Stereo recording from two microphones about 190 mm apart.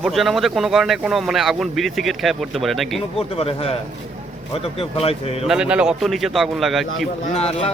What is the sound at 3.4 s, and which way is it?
Speech, 30° left (ahead or behind).